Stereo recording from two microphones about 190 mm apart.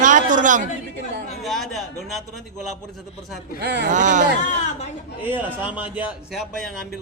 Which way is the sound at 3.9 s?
40° right (ahead or behind).